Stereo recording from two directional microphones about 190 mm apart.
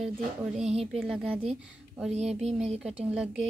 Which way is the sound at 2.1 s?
35° right (ahead or behind).